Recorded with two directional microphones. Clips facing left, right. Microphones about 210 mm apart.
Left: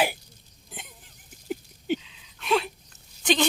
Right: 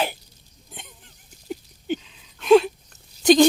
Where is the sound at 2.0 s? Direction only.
40° right (ahead or behind).